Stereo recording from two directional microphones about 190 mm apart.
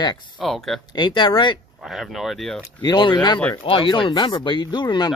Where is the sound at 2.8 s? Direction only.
25° left (ahead or behind).